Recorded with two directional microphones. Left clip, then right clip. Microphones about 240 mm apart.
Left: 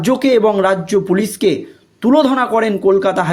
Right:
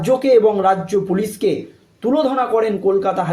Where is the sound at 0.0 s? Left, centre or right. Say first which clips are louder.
Even; left.